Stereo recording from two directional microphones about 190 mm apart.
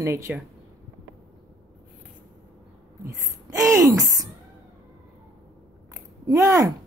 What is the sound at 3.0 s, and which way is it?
A woman's voice, 15° right (ahead or behind).